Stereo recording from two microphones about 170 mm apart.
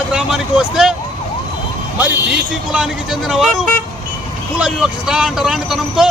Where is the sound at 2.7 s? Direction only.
Centre (ahead or behind).